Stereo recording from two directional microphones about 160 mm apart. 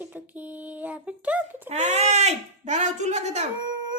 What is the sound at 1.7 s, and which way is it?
Speech, 45° right (ahead or behind).